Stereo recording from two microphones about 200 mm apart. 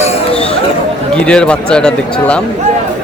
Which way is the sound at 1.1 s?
5° left (ahead or behind).